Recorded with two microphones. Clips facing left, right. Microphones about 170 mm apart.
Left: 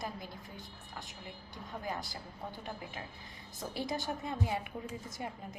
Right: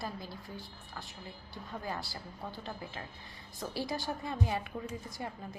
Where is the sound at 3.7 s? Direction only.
20° left (ahead or behind).